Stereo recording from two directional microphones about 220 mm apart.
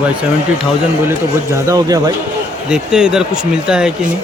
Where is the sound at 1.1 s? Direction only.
15° right (ahead or behind).